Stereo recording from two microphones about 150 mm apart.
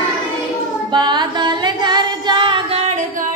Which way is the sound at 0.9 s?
30° right (ahead or behind).